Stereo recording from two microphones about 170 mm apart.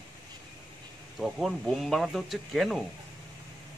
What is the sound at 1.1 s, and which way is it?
Speech, centre (ahead or behind).